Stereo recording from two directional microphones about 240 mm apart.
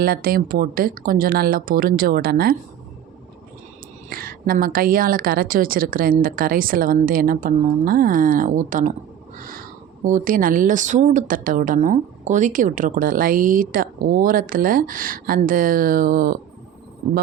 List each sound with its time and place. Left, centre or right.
0.0 s speech: right
4.1 s speech: right
10.0 s speech: right